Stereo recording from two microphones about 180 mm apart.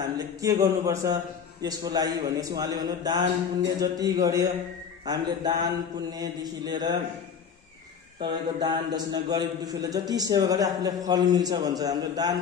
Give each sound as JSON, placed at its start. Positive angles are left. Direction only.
{"t": 0.0, "sound": "a man's voice", "side_deg": -20}
{"t": 8.2, "sound": "a man's voice", "side_deg": -25}